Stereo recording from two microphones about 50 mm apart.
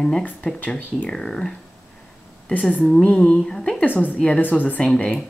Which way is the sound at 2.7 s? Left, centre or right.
Centre.